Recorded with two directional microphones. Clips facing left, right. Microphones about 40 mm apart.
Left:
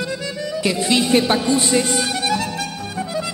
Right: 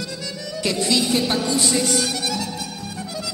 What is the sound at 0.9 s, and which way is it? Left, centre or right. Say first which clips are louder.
Music: left 5 dB; left.